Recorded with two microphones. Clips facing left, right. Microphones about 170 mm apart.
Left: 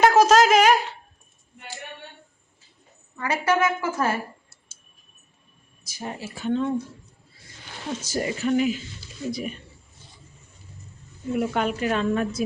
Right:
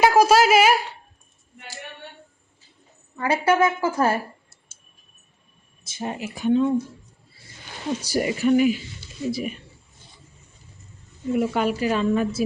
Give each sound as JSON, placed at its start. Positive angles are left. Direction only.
{"t": 0.0, "sound": "speech", "side_deg": -10}
{"t": 3.2, "sound": "a woman's voice", "side_deg": -30}
{"t": 5.8, "sound": "speech", "side_deg": -25}
{"t": 8.0, "sound": "a woman's voice", "side_deg": -10}
{"t": 11.3, "sound": "a woman's voice", "side_deg": -5}